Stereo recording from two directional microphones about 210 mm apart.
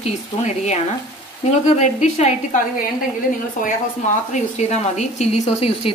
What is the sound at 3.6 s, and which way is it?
A woman's voice, 35° left (ahead or behind).